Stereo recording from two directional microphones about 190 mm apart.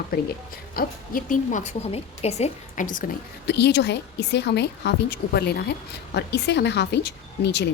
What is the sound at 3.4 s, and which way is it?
A woman's voice, 60° left (ahead or behind).